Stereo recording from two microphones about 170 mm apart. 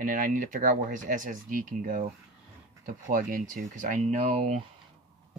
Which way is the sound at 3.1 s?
50° right (ahead or behind).